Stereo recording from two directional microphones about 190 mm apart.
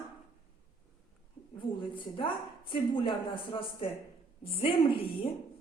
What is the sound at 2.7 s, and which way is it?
Speech, 25° left (ahead or behind).